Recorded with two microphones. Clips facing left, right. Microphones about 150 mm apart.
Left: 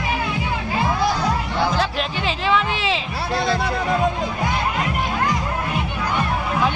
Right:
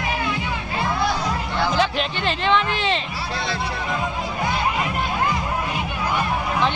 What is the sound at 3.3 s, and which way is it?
Music, 45° left (ahead or behind).